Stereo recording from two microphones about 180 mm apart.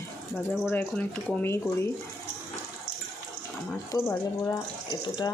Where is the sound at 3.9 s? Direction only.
15° left (ahead or behind).